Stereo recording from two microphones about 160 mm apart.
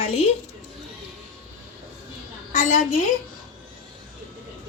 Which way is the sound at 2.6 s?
50° left (ahead or behind).